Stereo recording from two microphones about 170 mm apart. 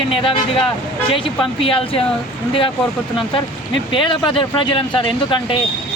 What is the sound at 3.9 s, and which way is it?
Speech, 30° left (ahead or behind).